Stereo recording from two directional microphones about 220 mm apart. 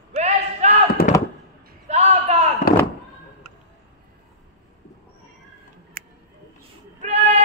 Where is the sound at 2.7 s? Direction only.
45° left (ahead or behind).